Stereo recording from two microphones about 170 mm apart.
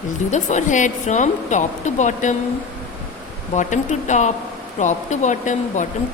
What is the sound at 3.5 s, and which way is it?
Speech, 45° left (ahead or behind).